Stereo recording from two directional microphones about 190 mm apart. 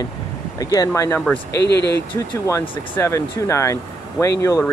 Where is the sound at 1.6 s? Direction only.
65° left (ahead or behind).